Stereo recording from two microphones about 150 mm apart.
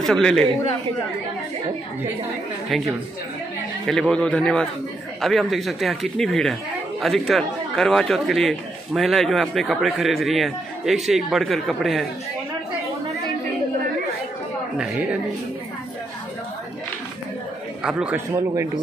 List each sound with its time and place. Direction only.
0.0 s speech: 5° left (ahead or behind)
3.8 s speech: 5° left (ahead or behind)
14.8 s a woman's voice: 10° right (ahead or behind)
17.8 s a woman's voice: 5° right (ahead or behind)
18.3 s speech: 20° right (ahead or behind)